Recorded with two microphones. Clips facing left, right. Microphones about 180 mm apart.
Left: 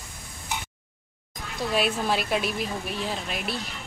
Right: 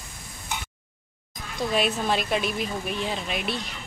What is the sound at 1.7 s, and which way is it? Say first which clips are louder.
Speech: even; 5° left (ahead or behind).